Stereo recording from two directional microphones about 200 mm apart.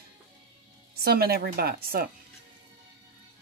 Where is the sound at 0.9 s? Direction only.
50° right (ahead or behind).